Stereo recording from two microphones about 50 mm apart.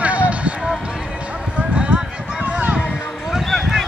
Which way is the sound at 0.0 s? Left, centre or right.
Right.